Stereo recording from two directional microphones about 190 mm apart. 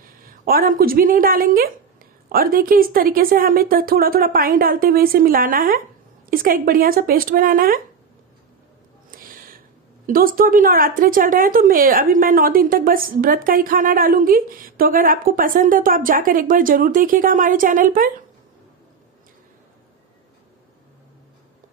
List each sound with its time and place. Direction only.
0.0 s a woman's voice: 45° right (ahead or behind)
9.1 s a sound: 50° right (ahead or behind)
10.0 s a woman's voice: 50° right (ahead or behind)